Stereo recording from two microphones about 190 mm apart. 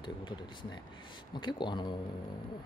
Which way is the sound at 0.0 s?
25° left (ahead or behind).